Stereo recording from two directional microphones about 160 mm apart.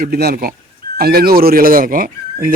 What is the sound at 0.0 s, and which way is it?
Speech, 70° right (ahead or behind).